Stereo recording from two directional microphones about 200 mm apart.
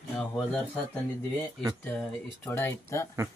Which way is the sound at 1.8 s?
10° left (ahead or behind).